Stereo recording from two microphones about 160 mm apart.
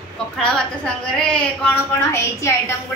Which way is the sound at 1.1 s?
5° left (ahead or behind).